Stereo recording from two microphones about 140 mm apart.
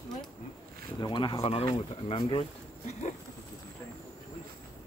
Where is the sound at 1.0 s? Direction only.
30° left (ahead or behind).